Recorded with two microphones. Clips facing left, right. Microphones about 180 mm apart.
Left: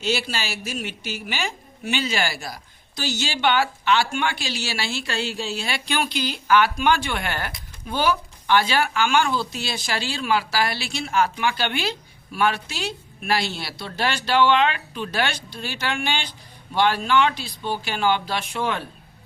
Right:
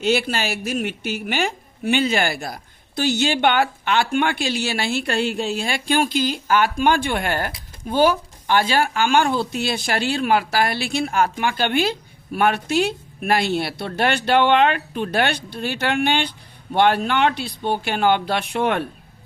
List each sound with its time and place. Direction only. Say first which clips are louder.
0.0 s a woman's voice: right 5 dB; 55° right (ahead or behind)